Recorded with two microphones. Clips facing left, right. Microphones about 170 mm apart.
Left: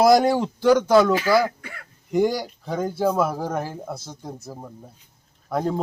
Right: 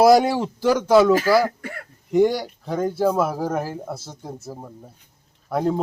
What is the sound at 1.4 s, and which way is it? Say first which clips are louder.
Speech: right 1 dB; 45° right (ahead or behind).